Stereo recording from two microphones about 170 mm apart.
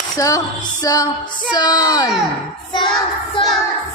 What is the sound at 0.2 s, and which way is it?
Speech, 20° left (ahead or behind).